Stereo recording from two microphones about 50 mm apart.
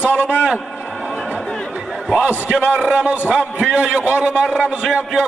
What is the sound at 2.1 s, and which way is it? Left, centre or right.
A man's voice, right.